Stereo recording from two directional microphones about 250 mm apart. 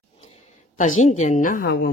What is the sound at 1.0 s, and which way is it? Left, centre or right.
Speech, left.